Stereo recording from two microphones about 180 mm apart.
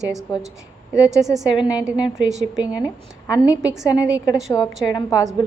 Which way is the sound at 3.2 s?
20° left (ahead or behind).